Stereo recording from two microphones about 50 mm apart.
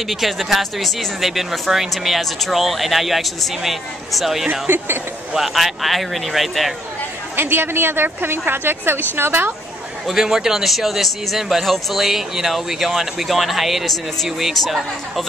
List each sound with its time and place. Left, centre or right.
0.1 s speech: centre
4.5 s a woman's voice: right
5.3 s speech: centre
7.3 s a woman's voice: right
10.0 s speech: centre